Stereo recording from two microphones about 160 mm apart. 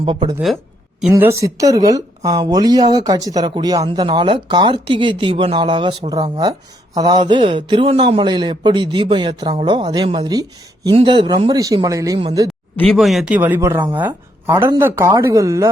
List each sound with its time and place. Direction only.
0.0 s speech: 30° right (ahead or behind)
1.1 s speech: 20° right (ahead or behind)
12.9 s speech: centre (ahead or behind); by 15.7 s 20° right (ahead or behind)